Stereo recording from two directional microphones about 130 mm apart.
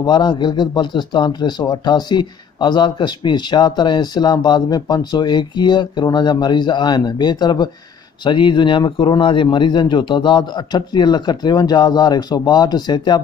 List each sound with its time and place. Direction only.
0.0 s speech: 35° left (ahead or behind)